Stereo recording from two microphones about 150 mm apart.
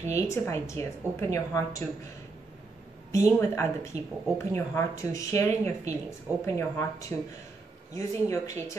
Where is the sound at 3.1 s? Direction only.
20° left (ahead or behind).